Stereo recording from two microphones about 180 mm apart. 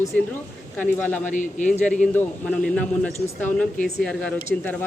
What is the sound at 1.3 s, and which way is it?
Speech, 45° left (ahead or behind).